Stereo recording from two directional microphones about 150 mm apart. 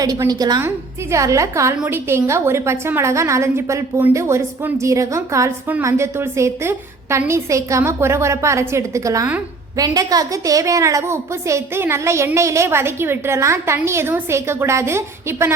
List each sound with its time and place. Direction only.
0.0 s a woman's voice: 25° right (ahead or behind)